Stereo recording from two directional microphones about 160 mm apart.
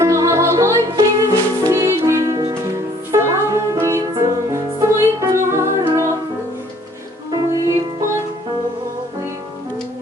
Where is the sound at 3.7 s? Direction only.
15° right (ahead or behind).